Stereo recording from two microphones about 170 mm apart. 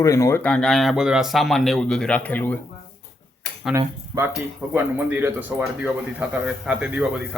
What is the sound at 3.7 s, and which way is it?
Speech, 20° right (ahead or behind).